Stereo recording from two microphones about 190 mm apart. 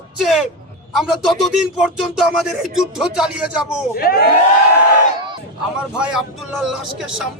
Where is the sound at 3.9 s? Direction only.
50° left (ahead or behind).